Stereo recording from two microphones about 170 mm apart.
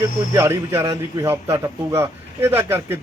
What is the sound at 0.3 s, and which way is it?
A man's voice, 15° right (ahead or behind).